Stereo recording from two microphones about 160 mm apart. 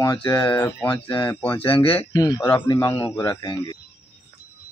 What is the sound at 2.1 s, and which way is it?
A man's voice, 25° left (ahead or behind).